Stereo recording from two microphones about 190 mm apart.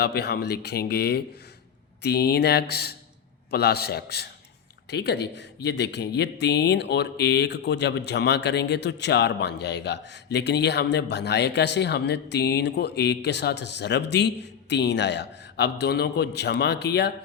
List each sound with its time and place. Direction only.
0.0 s speech: 55° left (ahead or behind)